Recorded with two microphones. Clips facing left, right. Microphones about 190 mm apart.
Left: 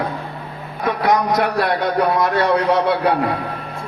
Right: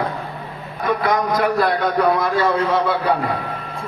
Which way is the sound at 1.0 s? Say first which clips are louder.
Left 3 dB; 75° left (ahead or behind).